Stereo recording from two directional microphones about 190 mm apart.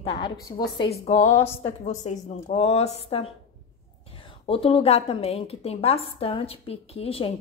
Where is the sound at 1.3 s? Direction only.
15° left (ahead or behind).